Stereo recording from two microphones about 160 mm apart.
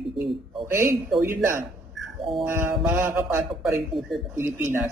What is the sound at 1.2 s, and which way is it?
Mantra, 15° right (ahead or behind).